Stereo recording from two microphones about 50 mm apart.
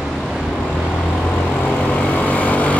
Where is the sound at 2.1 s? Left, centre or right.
Left.